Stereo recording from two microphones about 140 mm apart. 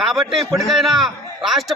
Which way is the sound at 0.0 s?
Centre (ahead or behind).